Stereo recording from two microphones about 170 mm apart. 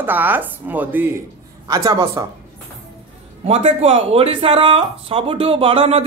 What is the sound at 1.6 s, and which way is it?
Speech, 20° right (ahead or behind).